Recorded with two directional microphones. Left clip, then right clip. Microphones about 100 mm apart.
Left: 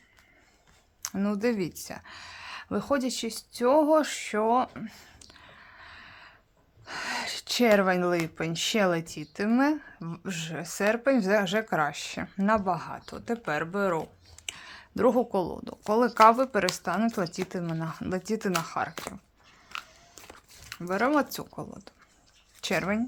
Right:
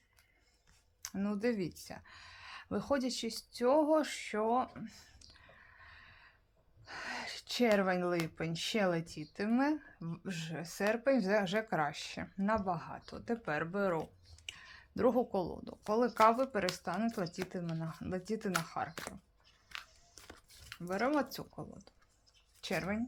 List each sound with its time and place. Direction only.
1.0 s speech: 35° left (ahead or behind)
5.3 s a sound: 20° left (ahead or behind)
6.8 s gasp: 30° left (ahead or behind)
8.4 s speech: 35° left (ahead or behind)
12.3 s speech: 40° left (ahead or behind); by 14.1 s 20° left (ahead or behind)
14.4 s speech: 30° left (ahead or behind)
17.7 s speech: 45° left (ahead or behind)
18.2 s speech: 35° left (ahead or behind)
20.7 s speech: 35° left (ahead or behind)